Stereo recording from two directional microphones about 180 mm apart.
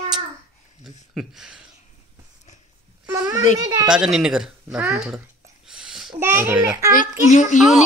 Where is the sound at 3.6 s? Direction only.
20° right (ahead or behind).